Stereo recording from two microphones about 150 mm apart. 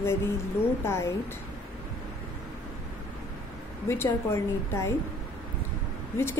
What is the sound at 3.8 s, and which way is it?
A woman's voice, 15° left (ahead or behind).